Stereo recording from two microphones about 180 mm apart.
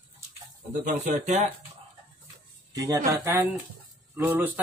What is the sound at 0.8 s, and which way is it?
Speech, 40° right (ahead or behind).